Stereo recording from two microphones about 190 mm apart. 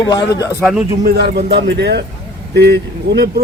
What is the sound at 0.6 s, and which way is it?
Speech, centre (ahead or behind).